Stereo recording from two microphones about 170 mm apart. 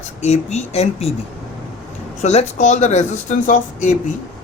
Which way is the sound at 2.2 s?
40° left (ahead or behind).